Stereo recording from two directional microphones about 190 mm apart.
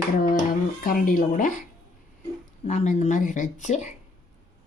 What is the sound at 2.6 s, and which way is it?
Speech, 40° left (ahead or behind).